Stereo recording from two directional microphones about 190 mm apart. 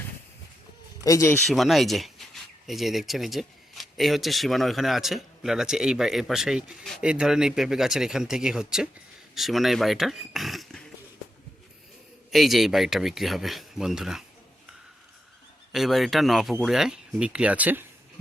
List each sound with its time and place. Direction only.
1.0 s speech: 15° left (ahead or behind)
1.5 s speech: centre (ahead or behind)
12.3 s speech: centre (ahead or behind)
15.7 s speech: centre (ahead or behind)